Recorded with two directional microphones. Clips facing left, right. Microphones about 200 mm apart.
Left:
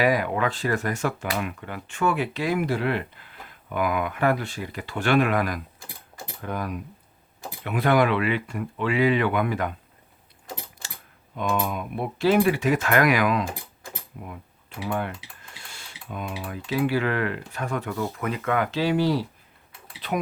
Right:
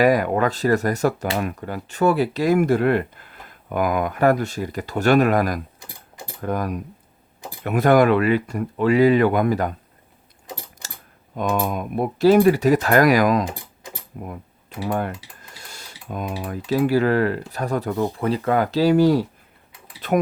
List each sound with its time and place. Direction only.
0.0 s speech: 45° right (ahead or behind)
11.3 s speech: 45° right (ahead or behind)
15.5 s tick-tock: 40° right (ahead or behind)
16.6 s speech: 40° right (ahead or behind)